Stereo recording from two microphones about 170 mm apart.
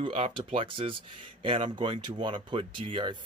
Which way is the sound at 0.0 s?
30° right (ahead or behind).